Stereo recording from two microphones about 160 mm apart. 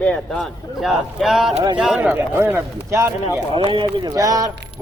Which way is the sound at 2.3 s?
15° right (ahead or behind).